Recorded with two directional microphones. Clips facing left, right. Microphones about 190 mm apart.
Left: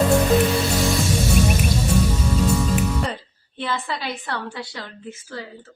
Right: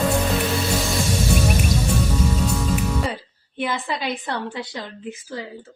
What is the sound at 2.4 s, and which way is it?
Speech, centre (ahead or behind).